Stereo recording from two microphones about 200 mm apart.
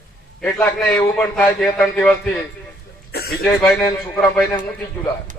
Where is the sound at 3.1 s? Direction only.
50° left (ahead or behind).